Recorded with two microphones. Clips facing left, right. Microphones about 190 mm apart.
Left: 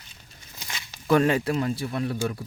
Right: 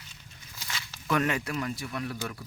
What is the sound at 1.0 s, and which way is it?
Speech, 30° left (ahead or behind).